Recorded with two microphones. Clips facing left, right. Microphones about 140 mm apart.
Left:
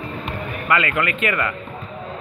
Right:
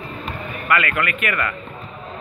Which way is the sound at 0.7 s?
20° left (ahead or behind).